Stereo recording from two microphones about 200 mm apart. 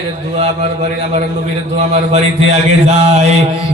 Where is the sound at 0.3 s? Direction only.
30° right (ahead or behind).